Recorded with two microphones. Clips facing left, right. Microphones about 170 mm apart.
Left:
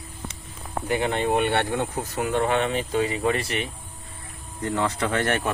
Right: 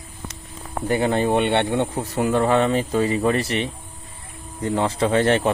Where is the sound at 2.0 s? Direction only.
35° right (ahead or behind).